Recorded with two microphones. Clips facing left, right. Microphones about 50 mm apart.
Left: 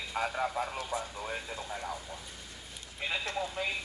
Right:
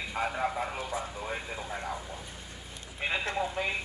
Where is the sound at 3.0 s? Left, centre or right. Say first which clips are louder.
Right 3 dB; right.